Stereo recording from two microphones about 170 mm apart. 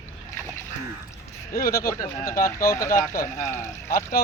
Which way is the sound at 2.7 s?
15° left (ahead or behind).